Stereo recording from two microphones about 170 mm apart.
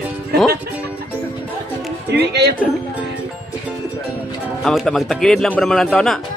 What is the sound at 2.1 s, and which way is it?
Speech, 75° right (ahead or behind).